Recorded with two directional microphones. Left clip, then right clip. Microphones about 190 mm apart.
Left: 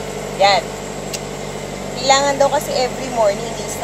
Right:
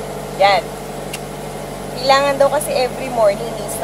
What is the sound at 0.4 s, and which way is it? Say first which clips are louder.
Speech: even; 5° left (ahead or behind).